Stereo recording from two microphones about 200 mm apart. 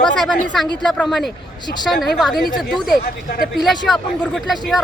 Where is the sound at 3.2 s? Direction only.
50° left (ahead or behind).